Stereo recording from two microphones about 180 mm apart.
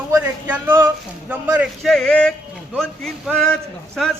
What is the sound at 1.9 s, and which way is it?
A man's voice, 5° left (ahead or behind).